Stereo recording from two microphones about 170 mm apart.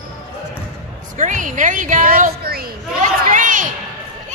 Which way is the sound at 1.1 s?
50° right (ahead or behind).